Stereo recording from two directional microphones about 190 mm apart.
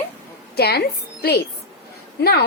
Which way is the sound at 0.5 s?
55° left (ahead or behind).